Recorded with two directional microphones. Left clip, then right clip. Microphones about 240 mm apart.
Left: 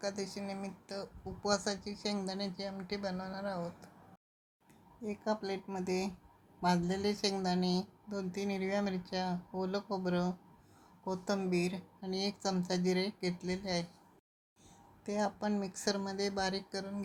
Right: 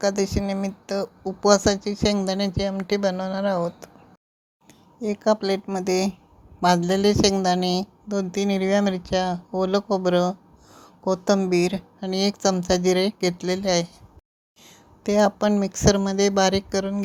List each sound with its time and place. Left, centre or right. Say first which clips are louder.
0.0 s speech: right 16 dB; right
4.9 s speech: right 15 dB; right